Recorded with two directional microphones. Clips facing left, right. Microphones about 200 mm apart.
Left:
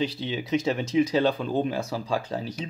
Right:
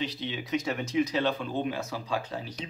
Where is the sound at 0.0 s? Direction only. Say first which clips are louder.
Left 5 dB; 30° left (ahead or behind).